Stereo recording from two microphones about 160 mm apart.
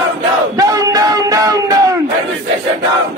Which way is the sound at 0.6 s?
20° right (ahead or behind).